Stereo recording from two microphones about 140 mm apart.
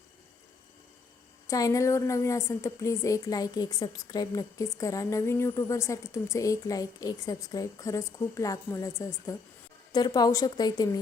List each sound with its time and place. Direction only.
1.5 s a woman's voice: 25° left (ahead or behind)